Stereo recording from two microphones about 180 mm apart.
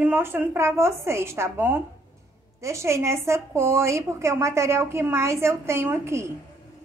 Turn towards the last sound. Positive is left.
turn(degrees=-15)  # may be behind; listen again after turning